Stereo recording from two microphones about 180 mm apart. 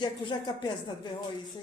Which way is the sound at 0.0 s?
25° left (ahead or behind).